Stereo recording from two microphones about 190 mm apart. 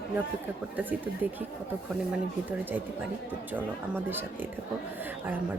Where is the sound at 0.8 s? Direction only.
10° right (ahead or behind).